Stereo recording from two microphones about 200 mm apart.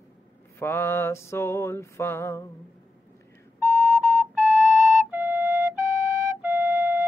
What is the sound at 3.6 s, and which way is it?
Flute, 10° right (ahead or behind).